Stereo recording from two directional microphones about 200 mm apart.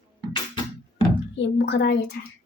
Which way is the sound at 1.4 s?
60° left (ahead or behind).